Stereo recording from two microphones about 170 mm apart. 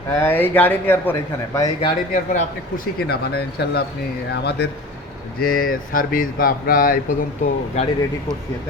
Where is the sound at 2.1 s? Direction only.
55° left (ahead or behind); by 4.7 s 80° left.